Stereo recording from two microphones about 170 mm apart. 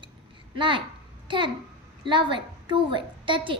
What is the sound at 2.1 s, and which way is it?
A woman's voice, 30° right (ahead or behind).